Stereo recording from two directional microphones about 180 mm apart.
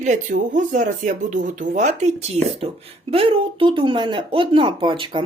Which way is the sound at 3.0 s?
30° right (ahead or behind).